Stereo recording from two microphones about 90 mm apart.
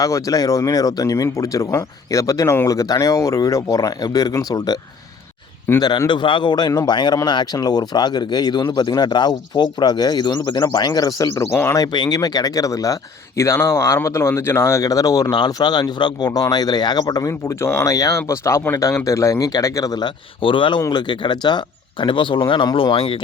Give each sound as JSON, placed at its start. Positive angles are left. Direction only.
{"t": 0.0, "sound": "speech", "side_deg": 40}
{"t": 5.7, "sound": "speech", "side_deg": 30}
{"t": 6.1, "sound": "speech", "side_deg": 60}
{"t": 11.5, "sound": "speech", "side_deg": 25}
{"t": 11.9, "sound": "speech", "side_deg": 55}
{"t": 17.2, "sound": "speech", "side_deg": 40}
{"t": 20.4, "sound": "speech", "side_deg": 70}